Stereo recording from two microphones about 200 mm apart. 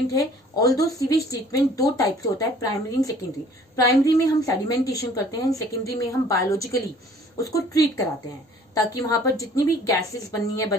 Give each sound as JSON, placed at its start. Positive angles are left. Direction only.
{"t": 0.1, "sound": "a woman's voice", "side_deg": 15}